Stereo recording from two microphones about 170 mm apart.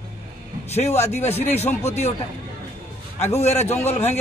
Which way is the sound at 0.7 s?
40° left (ahead or behind).